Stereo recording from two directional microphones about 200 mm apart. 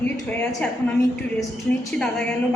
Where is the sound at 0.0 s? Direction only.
5° left (ahead or behind).